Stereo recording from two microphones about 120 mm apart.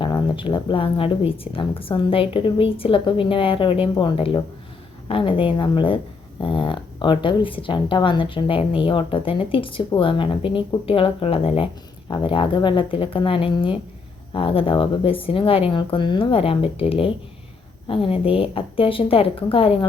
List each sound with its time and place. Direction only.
0.0 s a woman's voice: 45° left (ahead or behind)
12.0 s a woman's voice: 40° left (ahead or behind)